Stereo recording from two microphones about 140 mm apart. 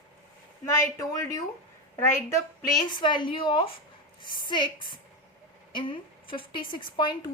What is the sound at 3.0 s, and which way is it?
Speech, 35° left (ahead or behind).